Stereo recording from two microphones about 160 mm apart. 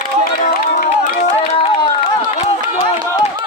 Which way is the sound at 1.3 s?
40° left (ahead or behind).